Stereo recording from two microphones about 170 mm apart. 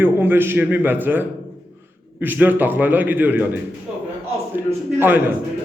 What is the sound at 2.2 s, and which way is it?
A man's voice, 10° right (ahead or behind).